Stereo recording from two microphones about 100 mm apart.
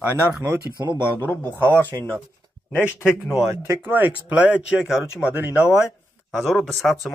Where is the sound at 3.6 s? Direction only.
20° right (ahead or behind).